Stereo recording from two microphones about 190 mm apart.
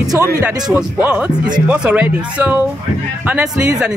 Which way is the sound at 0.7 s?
10° right (ahead or behind).